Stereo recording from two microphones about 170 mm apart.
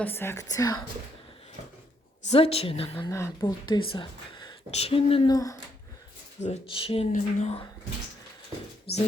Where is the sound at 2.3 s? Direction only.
35° left (ahead or behind).